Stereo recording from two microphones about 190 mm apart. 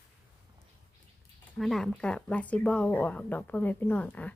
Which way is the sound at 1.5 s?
Centre (ahead or behind).